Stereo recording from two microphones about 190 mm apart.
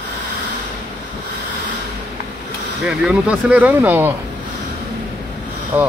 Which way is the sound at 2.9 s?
5° right (ahead or behind).